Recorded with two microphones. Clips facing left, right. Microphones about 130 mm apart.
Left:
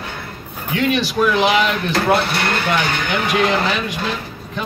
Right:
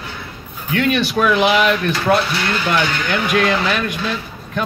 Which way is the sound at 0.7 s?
60° right (ahead or behind).